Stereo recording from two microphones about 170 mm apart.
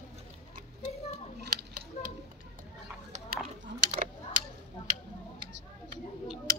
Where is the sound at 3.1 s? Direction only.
45° right (ahead or behind).